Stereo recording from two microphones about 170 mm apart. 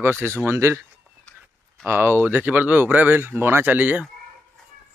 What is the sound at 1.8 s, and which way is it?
Speech, 15° right (ahead or behind).